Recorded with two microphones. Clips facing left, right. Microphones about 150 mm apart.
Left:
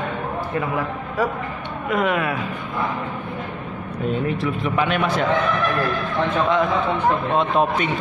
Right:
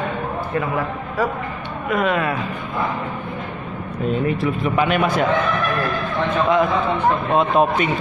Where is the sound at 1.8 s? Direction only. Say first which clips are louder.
Right 1 dB; 20° left (ahead or behind).